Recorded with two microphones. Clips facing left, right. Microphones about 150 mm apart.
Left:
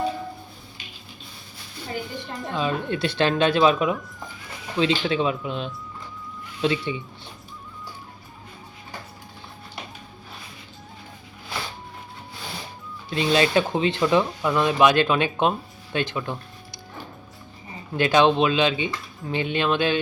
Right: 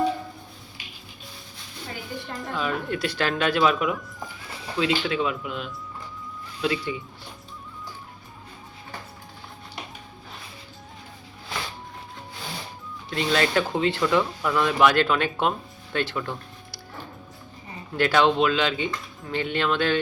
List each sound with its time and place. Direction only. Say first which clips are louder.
2.4 s speech: left 3 dB; 20° left (ahead or behind)
13.1 s speech: left 3 dB; 20° left (ahead or behind)
17.9 s speech: left 2 dB; 20° left (ahead or behind)